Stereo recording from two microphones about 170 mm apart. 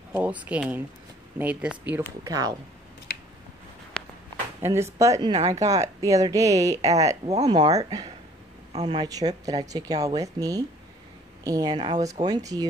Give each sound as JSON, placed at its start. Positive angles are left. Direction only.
{"t": 0.1, "sound": "speech", "side_deg": -10}
{"t": 2.2, "sound": "speech", "side_deg": -20}
{"t": 3.9, "sound": "walk", "side_deg": 5}
{"t": 4.9, "sound": "speech", "side_deg": -20}
{"t": 7.2, "sound": "speech", "side_deg": -40}
{"t": 7.5, "sound": "speech", "side_deg": -25}